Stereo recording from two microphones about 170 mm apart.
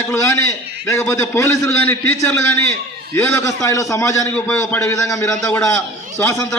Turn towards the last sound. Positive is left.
turn(degrees=15)  # may be behind; listen again after turning